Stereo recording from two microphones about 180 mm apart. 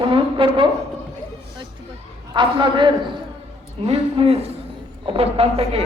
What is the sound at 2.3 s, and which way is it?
A woman's voice, 25° right (ahead or behind).